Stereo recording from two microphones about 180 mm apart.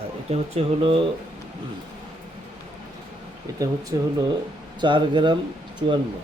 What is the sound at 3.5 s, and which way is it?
Speech, 20° right (ahead or behind).